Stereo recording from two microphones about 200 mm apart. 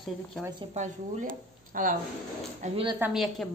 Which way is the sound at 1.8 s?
40° right (ahead or behind).